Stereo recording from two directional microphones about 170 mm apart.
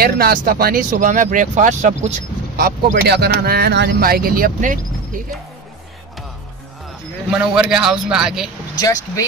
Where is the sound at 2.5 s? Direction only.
70° right (ahead or behind); by 4.7 s 55° right (ahead or behind).